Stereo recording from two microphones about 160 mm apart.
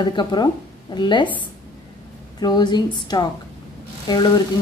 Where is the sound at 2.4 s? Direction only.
25° left (ahead or behind).